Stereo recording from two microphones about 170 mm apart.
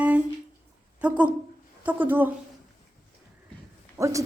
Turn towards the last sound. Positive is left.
turn(degrees=-20)  # may be behind; listen again after turning